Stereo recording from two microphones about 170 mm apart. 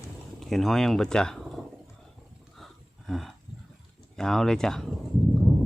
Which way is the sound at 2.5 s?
Centre (ahead or behind).